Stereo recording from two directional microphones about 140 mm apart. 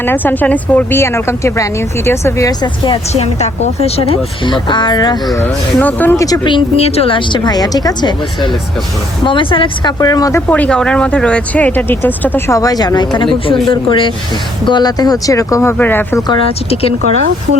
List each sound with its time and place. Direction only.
0.0 s speech: 15° left (ahead or behind)
3.1 s a woman's voice: 50° left (ahead or behind); by 5.4 s 30° left (ahead or behind)
5.4 s speech: 15° left (ahead or behind)
6.2 s speech: 30° left (ahead or behind)
10.5 s speech: 10° left (ahead or behind)
16.3 s speech: 40° left (ahead or behind)